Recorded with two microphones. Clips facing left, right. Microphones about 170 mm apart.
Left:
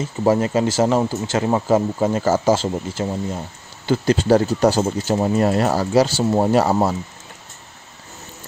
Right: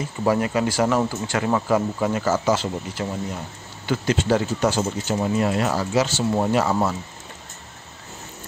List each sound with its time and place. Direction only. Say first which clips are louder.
0.2 s speech: left 4 dB; 30° left (ahead or behind)